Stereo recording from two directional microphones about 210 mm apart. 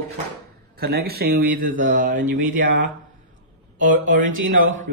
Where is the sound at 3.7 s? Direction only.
40° right (ahead or behind).